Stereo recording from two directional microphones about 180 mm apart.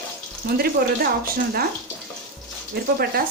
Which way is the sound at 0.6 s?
60° right (ahead or behind).